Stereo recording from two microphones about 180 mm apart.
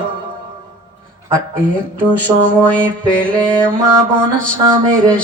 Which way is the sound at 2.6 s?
5° left (ahead or behind).